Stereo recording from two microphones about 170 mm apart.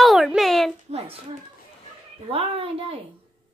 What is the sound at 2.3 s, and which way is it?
Speech, 35° right (ahead or behind).